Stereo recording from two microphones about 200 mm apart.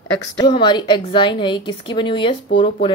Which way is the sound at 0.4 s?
25° left (ahead or behind).